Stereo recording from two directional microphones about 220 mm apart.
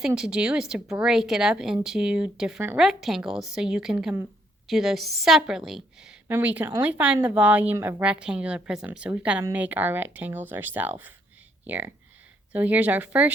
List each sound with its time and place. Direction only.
0.2 s speech: 5° right (ahead or behind)